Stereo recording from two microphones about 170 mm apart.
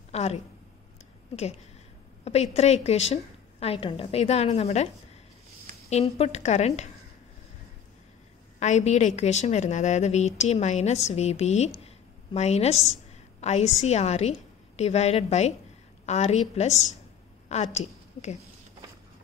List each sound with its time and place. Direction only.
0.1 s a woman's voice: 40° left (ahead or behind)
2.2 s a woman's voice: 40° left (ahead or behind)
5.9 s a woman's voice: 40° left (ahead or behind)
8.5 s a woman's voice: 45° left (ahead or behind)
12.7 s a woman's voice: centre (ahead or behind)
13.4 s a woman's voice: 40° left (ahead or behind)